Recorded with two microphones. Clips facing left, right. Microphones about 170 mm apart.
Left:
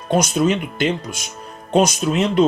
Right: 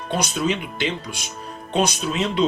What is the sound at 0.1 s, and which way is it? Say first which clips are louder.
Speech: left 6 dB; 45° left (ahead or behind).